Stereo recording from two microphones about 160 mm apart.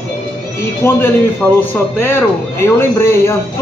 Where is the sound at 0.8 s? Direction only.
15° left (ahead or behind).